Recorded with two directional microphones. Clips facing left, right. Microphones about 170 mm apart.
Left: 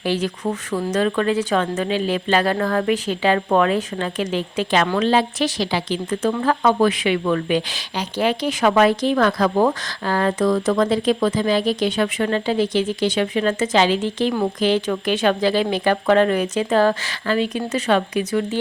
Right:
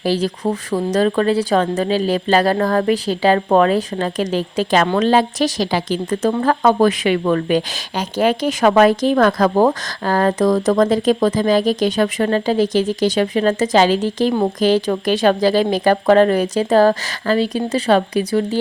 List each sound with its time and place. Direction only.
0.0 s a woman's voice: 35° right (ahead or behind)